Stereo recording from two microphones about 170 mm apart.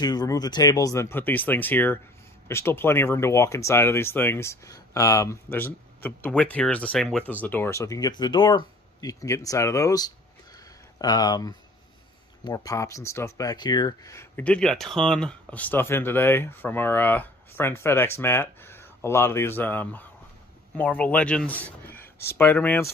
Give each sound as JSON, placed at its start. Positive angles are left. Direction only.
{"t": 0.0, "sound": "speech", "side_deg": 25}